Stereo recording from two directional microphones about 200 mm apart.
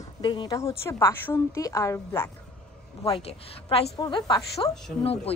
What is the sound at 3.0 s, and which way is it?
A woman's voice, 30° left (ahead or behind).